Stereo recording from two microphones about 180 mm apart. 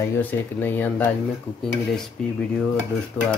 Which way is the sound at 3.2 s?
5° left (ahead or behind).